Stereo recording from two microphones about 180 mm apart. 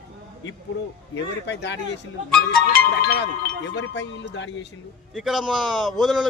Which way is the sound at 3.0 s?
65° left (ahead or behind).